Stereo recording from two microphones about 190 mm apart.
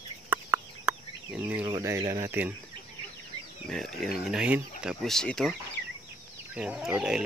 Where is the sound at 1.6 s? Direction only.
15° right (ahead or behind).